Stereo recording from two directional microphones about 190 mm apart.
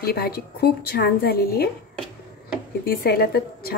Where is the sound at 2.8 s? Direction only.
55° left (ahead or behind).